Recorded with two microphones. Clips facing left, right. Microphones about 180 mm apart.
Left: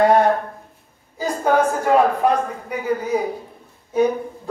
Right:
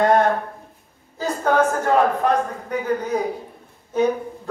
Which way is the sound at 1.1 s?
10° left (ahead or behind).